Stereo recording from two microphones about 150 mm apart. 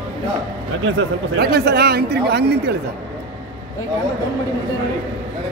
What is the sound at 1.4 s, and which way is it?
Speech, 90° right.